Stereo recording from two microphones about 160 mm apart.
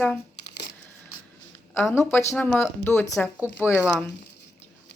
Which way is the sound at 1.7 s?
15° left (ahead or behind).